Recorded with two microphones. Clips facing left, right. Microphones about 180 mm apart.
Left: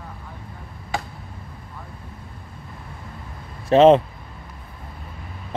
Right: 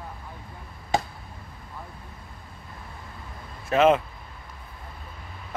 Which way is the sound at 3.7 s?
30° left (ahead or behind).